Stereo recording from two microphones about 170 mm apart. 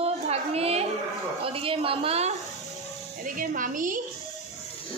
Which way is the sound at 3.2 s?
50° right (ahead or behind).